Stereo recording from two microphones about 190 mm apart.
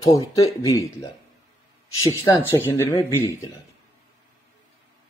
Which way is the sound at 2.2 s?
15° left (ahead or behind).